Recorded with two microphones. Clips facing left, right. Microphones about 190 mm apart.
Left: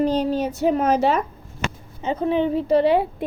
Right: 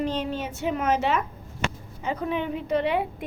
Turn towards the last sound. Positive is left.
turn(degrees=35)  # may be behind; listen again after turning